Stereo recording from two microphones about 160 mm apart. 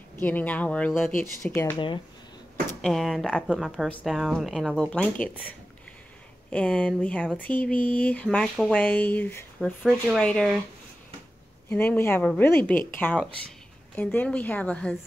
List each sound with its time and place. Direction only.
0.2 s speech: 10° left (ahead or behind)
1.2 s speech: 15° left (ahead or behind)
2.8 s speech: centre (ahead or behind)
6.5 s speech: 5° left (ahead or behind)
11.7 s speech: 10° left (ahead or behind)